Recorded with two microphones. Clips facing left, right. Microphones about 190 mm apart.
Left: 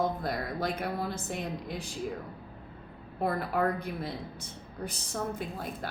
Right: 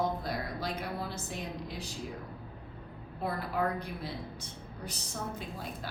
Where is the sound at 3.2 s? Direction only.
50° left (ahead or behind).